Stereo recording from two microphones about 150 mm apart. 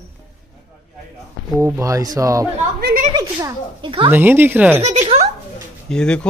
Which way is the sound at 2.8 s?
90° right.